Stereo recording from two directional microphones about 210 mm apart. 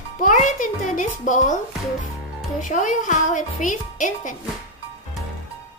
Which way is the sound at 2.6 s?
35° left (ahead or behind).